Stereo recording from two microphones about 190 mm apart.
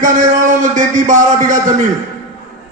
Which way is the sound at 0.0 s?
40° right (ahead or behind).